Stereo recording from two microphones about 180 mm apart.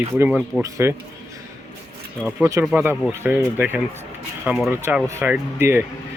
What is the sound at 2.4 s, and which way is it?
Speech, 15° right (ahead or behind).